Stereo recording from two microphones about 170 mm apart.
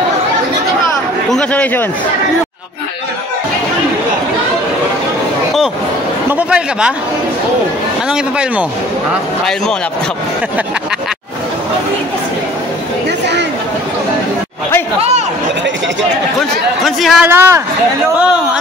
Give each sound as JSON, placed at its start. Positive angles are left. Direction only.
{"t": 1.3, "sound": "a man's voice", "side_deg": 10}
{"t": 6.3, "sound": "speech", "side_deg": -5}
{"t": 8.1, "sound": "speech", "side_deg": -5}
{"t": 15.0, "sound": "a sound", "side_deg": -40}
{"t": 16.3, "sound": "speech", "side_deg": 0}
{"t": 17.3, "sound": "speech", "side_deg": -15}